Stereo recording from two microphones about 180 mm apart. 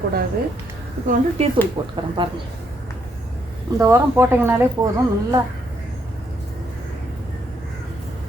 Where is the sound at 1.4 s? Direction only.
35° right (ahead or behind).